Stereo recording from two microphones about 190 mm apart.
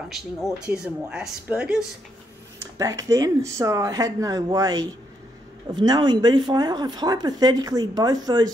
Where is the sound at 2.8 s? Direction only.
15° right (ahead or behind).